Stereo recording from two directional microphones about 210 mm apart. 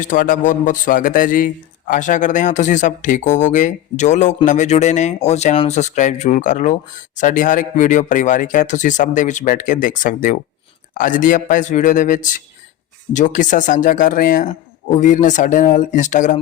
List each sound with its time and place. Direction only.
0.0 s speech: 40° left (ahead or behind)